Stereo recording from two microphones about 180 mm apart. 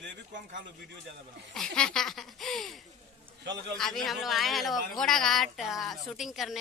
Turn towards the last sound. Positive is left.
turn(degrees=0)  # may be behind; listen again after turning